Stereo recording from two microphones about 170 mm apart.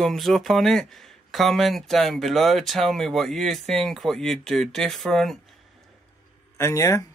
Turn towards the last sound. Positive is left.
turn(degrees=15)  # may be behind; listen again after turning